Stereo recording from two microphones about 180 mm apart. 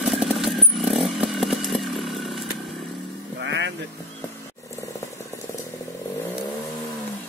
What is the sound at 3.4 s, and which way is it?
Vehicle, 90° right.